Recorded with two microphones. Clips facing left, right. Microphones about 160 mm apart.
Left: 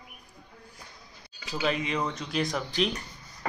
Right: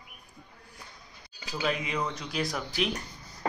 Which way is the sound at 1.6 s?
Centre (ahead or behind).